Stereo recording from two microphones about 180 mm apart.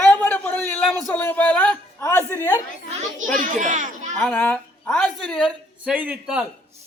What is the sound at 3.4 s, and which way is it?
Speech, 45° right (ahead or behind).